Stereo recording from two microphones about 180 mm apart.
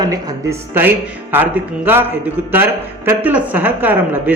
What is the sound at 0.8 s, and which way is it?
A man's voice, 10° right (ahead or behind).